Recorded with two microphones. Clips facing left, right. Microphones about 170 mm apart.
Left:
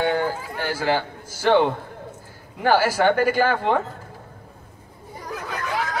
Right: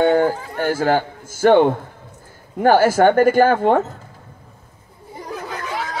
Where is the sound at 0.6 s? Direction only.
50° right (ahead or behind).